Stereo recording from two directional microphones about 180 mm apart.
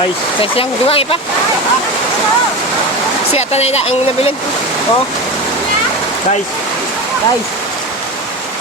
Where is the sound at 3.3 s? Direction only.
35° left (ahead or behind).